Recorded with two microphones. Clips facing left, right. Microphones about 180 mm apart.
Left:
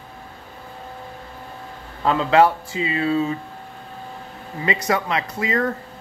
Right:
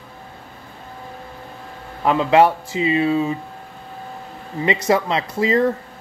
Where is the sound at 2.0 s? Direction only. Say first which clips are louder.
Right 2 dB; 15° right (ahead or behind).